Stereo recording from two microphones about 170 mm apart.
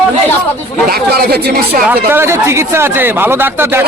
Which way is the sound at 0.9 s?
65° right (ahead or behind).